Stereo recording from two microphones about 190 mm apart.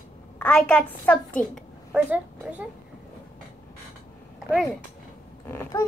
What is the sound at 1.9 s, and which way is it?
Speech, 5° right (ahead or behind).